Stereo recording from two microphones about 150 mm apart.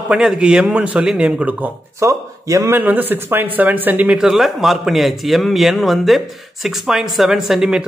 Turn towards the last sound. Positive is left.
turn(degrees=-5)  # may be behind; listen again after turning